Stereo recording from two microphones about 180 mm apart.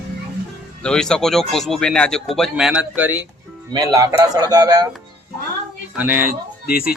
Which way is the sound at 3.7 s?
20° right (ahead or behind).